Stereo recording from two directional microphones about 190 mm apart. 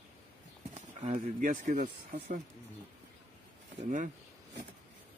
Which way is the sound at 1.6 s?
50° right (ahead or behind).